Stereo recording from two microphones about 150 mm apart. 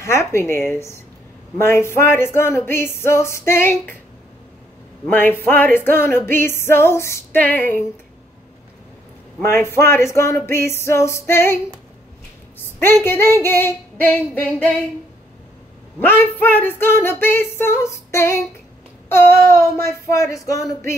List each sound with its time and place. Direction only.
0.0 s music: 20° left (ahead or behind)
5.1 s music: 15° left (ahead or behind)
9.4 s music: 15° left (ahead or behind)
12.8 s music: 15° left (ahead or behind)
16.0 s music: 10° left (ahead or behind)
19.0 s a sound: 15° left (ahead or behind)